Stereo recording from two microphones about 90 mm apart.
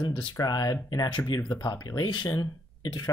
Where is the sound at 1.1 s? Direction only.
55° left (ahead or behind).